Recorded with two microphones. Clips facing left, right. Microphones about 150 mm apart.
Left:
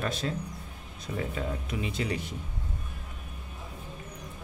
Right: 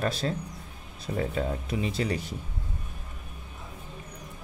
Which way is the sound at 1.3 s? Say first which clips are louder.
Right 4 dB; 35° right (ahead or behind).